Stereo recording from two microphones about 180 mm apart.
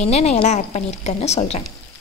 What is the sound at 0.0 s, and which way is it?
A woman's voice, 35° left (ahead or behind).